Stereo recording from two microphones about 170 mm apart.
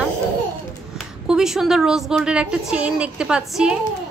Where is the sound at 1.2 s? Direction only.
Centre (ahead or behind).